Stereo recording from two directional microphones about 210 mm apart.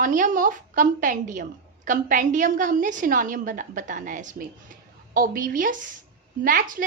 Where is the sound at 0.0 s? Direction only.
40° right (ahead or behind).